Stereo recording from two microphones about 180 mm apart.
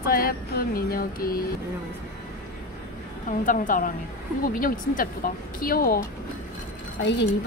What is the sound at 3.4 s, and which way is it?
A woman's voice, 45° left (ahead or behind).